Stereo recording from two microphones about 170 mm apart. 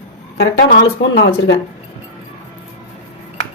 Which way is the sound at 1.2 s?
90° left.